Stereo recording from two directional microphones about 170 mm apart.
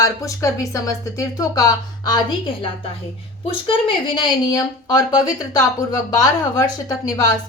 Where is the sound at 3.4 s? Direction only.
30° left (ahead or behind).